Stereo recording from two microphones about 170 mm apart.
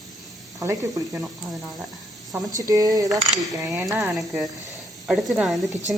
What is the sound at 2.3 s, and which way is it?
Cutlery, 20° right (ahead or behind).